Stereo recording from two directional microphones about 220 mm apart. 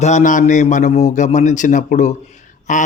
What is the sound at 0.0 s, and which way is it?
A man's voice, 35° left (ahead or behind).